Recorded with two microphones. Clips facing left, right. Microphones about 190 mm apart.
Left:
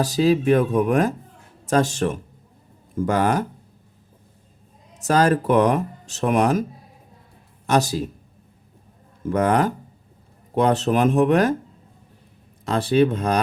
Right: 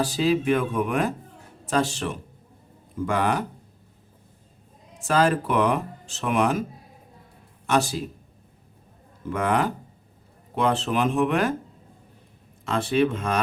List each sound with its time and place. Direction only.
0.0 s speech: 40° left (ahead or behind)
4.9 s speech: 40° left (ahead or behind)
7.7 s speech: 40° left (ahead or behind)
9.2 s speech: 40° left (ahead or behind)
12.6 s speech: 35° left (ahead or behind)